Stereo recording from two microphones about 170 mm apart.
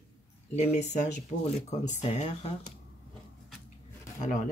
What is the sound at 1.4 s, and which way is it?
Speech, 45° left (ahead or behind).